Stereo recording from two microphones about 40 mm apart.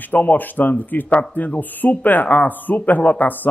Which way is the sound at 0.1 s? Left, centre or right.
Left.